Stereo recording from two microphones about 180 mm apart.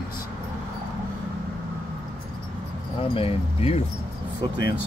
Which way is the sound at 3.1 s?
30° left (ahead or behind).